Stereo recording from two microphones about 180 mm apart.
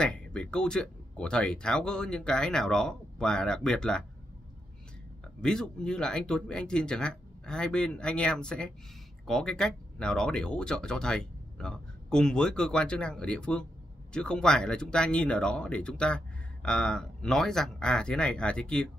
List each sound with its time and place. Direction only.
0.0 s speech: 5° left (ahead or behind)
5.4 s speech: 5° left (ahead or behind)